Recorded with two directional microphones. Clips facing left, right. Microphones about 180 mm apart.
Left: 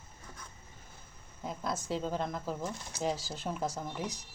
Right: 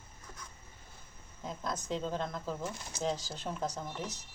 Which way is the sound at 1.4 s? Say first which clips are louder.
Left 2 dB; 5° left (ahead or behind).